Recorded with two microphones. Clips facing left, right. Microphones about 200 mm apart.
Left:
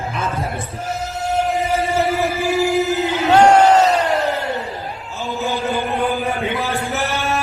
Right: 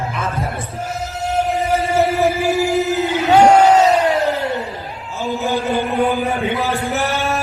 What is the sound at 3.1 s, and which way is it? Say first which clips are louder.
Crowd: right 1 dB; 10° right (ahead or behind).